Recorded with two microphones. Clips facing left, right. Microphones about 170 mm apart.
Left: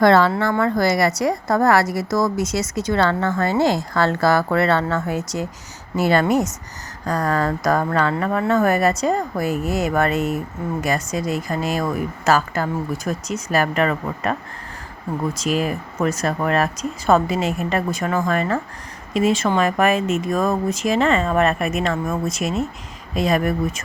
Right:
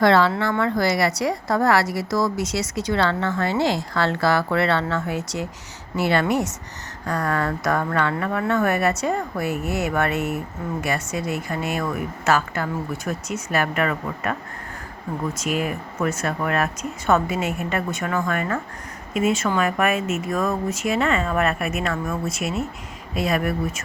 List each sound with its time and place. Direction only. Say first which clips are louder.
0.0 s speech: left 3 dB; 45° left (ahead or behind)
23.2 s speech: left 3 dB; 30° left (ahead or behind)